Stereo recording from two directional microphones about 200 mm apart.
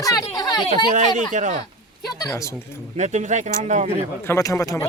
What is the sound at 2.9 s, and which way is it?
Speech, 35° right (ahead or behind).